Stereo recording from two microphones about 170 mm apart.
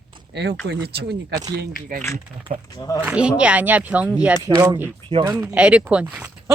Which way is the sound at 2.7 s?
20° left (ahead or behind).